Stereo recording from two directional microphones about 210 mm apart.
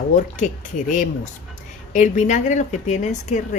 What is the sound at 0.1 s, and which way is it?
A woman's voice, 35° left (ahead or behind).